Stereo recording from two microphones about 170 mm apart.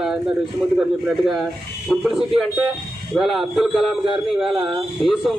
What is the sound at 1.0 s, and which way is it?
A man's voice, centre (ahead or behind).